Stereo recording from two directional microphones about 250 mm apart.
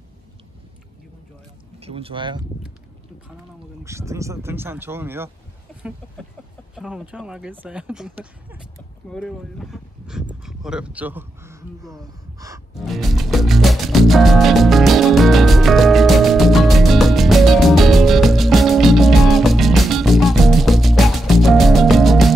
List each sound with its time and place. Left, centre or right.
1.8 s speech: right
3.8 s speech: centre
12.7 s music: centre